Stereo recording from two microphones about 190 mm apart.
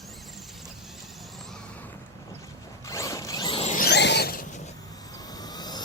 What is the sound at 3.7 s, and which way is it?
Zipper, 55° left (ahead or behind).